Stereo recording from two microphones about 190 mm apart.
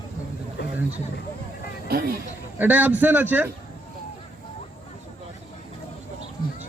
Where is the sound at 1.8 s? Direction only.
55° right (ahead or behind).